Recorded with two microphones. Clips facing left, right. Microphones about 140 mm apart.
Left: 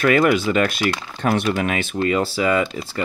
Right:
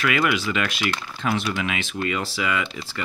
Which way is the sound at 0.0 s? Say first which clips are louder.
Left 7 dB; 40° left (ahead or behind).